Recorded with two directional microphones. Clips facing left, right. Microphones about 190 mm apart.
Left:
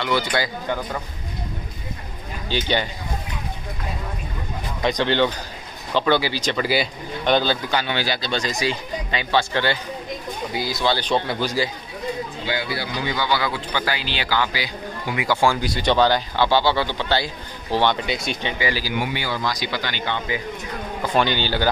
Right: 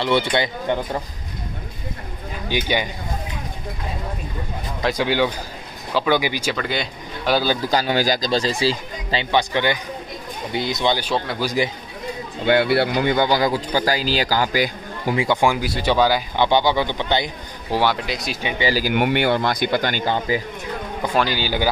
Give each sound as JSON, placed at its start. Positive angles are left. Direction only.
{"t": 0.0, "sound": "speech", "side_deg": -25}
{"t": 2.4, "sound": "speech", "side_deg": -15}
{"t": 4.8, "sound": "speech", "side_deg": -10}
{"t": 6.5, "sound": "speech", "side_deg": 5}
{"t": 7.6, "sound": "speech", "side_deg": -35}
{"t": 9.3, "sound": "speech", "side_deg": -15}
{"t": 11.0, "sound": "speech", "side_deg": -5}
{"t": 12.4, "sound": "speech", "side_deg": -65}
{"t": 15.1, "sound": "speech", "side_deg": -20}
{"t": 15.6, "sound": "speech", "side_deg": -5}
{"t": 18.8, "sound": "a man's voice", "side_deg": -60}
{"t": 21.1, "sound": "a man's voice", "side_deg": -5}